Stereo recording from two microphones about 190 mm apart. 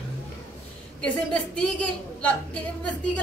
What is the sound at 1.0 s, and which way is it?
A woman's voice, 5° left (ahead or behind).